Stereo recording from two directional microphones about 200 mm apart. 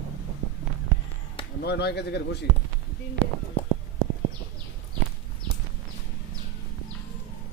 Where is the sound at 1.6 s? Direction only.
55° left (ahead or behind).